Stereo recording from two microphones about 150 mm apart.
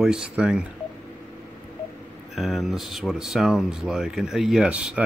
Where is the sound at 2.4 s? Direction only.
Centre (ahead or behind).